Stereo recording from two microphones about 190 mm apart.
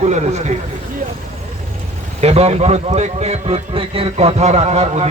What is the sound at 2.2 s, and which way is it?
A man's voice, 35° right (ahead or behind).